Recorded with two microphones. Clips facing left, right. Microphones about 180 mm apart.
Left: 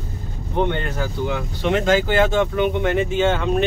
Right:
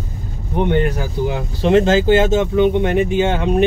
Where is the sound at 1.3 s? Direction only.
30° right (ahead or behind).